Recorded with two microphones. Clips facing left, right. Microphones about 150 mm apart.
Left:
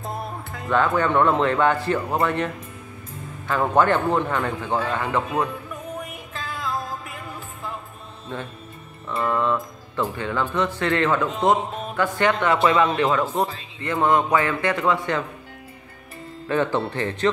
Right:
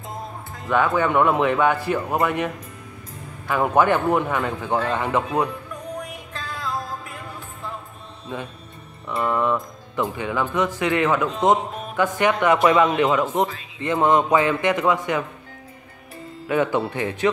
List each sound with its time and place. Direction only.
0.1 s music: 70° left (ahead or behind)
0.7 s a man's voice: 10° right (ahead or behind)
5.9 s music: 5° left (ahead or behind)
9.1 s music: centre (ahead or behind)
9.4 s music: 15° right (ahead or behind)
10.1 s a man's voice: 15° right (ahead or behind)
16.4 s a man's voice: 10° right (ahead or behind)